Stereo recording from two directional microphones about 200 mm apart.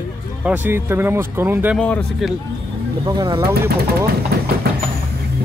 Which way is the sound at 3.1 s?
20° right (ahead or behind).